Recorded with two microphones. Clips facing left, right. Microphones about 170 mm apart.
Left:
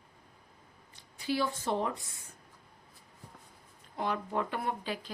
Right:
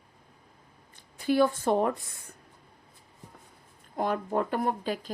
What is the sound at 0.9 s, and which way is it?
A woman's voice, 50° right (ahead or behind).